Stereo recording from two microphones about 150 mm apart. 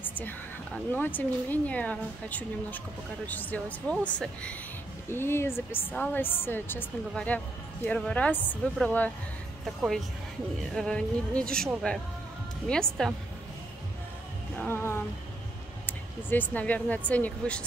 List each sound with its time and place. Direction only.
0.0 s a sound: 10° left (ahead or behind)
0.9 s speech: 10° left (ahead or behind)
14.6 s speech: 15° left (ahead or behind)